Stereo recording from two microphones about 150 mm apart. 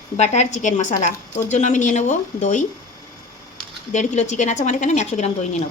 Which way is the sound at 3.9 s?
55° left (ahead or behind).